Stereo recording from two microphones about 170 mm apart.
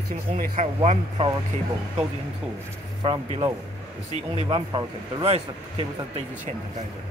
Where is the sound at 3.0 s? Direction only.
30° right (ahead or behind).